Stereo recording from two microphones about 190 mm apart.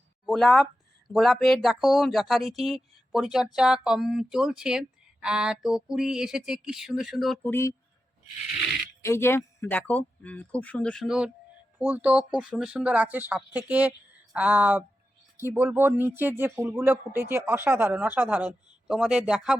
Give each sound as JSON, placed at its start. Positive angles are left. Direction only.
{"t": 0.3, "sound": "speech", "side_deg": 0}
{"t": 7.5, "sound": "speech", "side_deg": 15}
{"t": 9.0, "sound": "a man's voice", "side_deg": 15}